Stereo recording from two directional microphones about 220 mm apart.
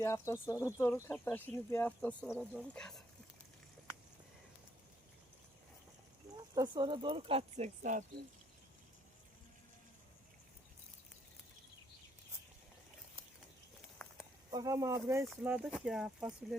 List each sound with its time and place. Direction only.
0.0 s speech: 10° left (ahead or behind)
2.2 s speech: 5° right (ahead or behind)
6.3 s speech: 20° right (ahead or behind); by 8.0 s 35° right (ahead or behind)
14.0 s a sound: 5° left (ahead or behind)
14.5 s speech: 15° right (ahead or behind)